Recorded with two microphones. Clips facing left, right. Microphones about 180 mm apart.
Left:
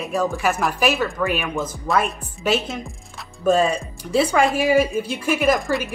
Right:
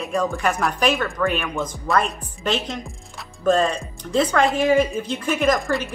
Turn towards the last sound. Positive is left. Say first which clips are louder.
# left 1 dB
turn(degrees=5)  # may be behind; listen again after turning